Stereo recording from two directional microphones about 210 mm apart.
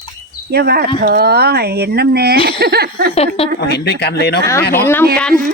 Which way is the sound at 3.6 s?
50° left (ahead or behind).